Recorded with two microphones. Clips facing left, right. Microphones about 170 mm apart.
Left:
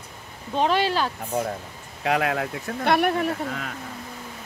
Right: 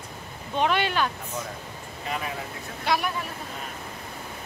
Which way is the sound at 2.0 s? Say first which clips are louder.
Left 9 dB; 85° left.